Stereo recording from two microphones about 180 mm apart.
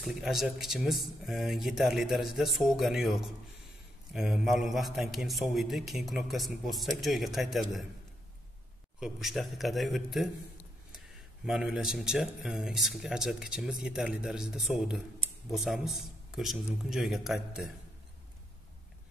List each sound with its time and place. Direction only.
0.0 s a man's voice: centre (ahead or behind)
9.0 s a man's voice: centre (ahead or behind)
11.4 s a man's voice: 5° right (ahead or behind)